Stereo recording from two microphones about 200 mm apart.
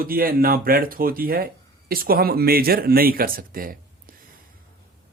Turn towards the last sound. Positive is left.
turn(degrees=-45)  # may be behind; listen again after turning